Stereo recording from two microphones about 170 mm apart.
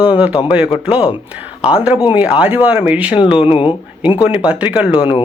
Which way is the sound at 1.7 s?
5° right (ahead or behind).